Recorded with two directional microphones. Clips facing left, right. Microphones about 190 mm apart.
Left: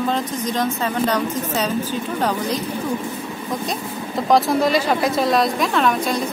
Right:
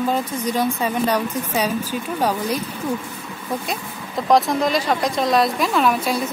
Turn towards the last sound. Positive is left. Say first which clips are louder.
# even
turn(degrees=-5)  # may be behind; listen again after turning